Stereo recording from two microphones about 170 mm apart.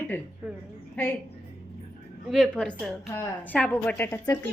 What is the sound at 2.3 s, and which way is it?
A woman's voice, centre (ahead or behind).